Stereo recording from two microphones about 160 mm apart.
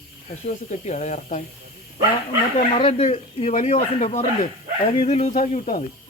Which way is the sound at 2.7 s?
35° left (ahead or behind).